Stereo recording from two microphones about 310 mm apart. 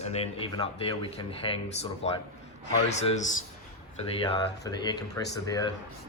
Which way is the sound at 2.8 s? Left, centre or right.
Left.